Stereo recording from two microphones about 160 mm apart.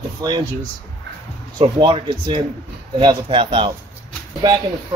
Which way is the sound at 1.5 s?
30° right (ahead or behind).